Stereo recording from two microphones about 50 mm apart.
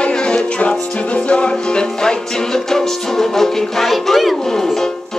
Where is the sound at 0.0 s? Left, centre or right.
Centre.